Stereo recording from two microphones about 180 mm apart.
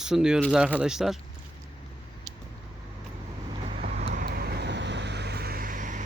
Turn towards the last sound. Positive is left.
turn(degrees=-45)  # may be behind; listen again after turning